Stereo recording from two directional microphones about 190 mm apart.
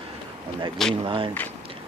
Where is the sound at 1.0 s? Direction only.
25° right (ahead or behind).